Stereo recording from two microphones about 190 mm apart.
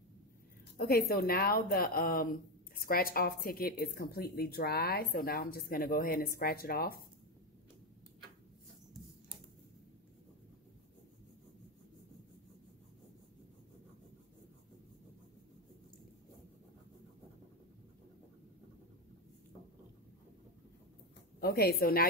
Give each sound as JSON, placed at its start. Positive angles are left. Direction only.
{"t": 0.7, "sound": "a woman's voice", "side_deg": 50}
{"t": 21.4, "sound": "a woman's voice", "side_deg": 55}